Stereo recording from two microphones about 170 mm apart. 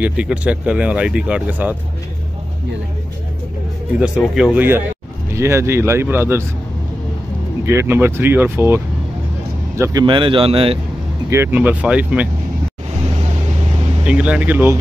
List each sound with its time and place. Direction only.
0.0 s speech: 5° right (ahead or behind)
4.0 s speech: 5° right (ahead or behind)
7.6 s speech: 15° right (ahead or behind)
10.0 s speech: 30° right (ahead or behind)
11.2 s speech: 15° right (ahead or behind)
14.0 s speech: 5° right (ahead or behind)